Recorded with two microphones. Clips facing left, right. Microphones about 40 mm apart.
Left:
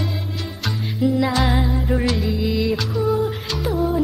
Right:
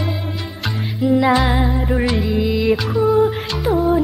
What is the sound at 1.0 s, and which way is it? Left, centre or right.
Music, centre.